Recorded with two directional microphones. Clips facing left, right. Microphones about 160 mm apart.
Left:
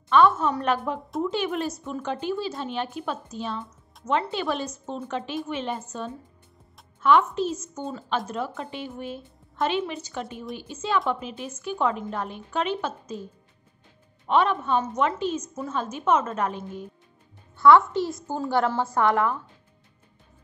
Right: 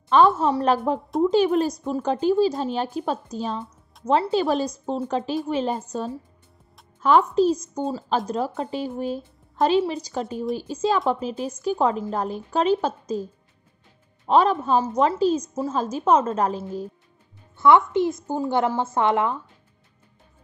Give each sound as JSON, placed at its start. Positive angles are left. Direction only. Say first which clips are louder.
{"t": 0.1, "sound": "speech", "louder": "right 2 dB", "side_deg": -35}
{"t": 7.0, "sound": "speech", "louder": "right 3 dB", "side_deg": -35}
{"t": 17.6, "sound": "a woman's voice", "louder": "even", "side_deg": -20}